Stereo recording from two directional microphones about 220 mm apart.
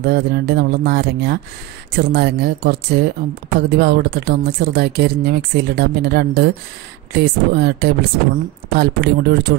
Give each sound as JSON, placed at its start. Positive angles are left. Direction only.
{"t": 0.0, "sound": "a woman's voice", "side_deg": -45}